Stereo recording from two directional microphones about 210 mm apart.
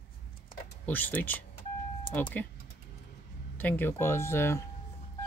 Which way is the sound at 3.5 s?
10° left (ahead or behind).